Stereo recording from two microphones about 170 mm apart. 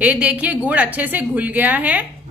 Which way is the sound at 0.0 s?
10° right (ahead or behind).